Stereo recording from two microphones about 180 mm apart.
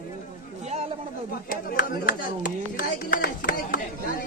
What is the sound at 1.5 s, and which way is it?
Speech, 50° left (ahead or behind).